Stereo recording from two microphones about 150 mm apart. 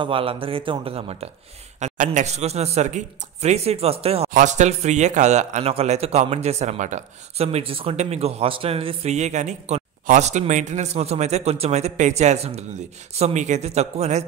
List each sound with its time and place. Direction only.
0.0 s a man's voice: 35° right (ahead or behind)
1.8 s speech: 55° right (ahead or behind)
4.3 s speech: 55° right (ahead or behind)